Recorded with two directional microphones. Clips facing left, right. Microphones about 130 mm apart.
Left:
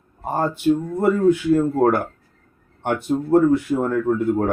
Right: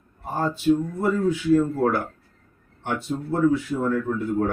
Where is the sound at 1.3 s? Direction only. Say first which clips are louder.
Left 3 dB; 55° left (ahead or behind).